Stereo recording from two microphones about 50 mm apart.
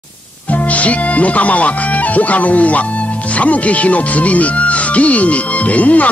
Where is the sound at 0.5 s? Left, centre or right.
Left.